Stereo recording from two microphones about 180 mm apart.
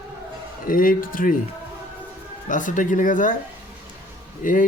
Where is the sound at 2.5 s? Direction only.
45° left (ahead or behind).